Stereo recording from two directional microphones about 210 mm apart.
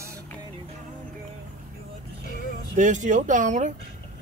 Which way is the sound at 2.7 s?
35° right (ahead or behind).